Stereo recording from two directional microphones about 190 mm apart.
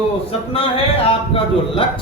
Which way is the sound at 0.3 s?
30° left (ahead or behind).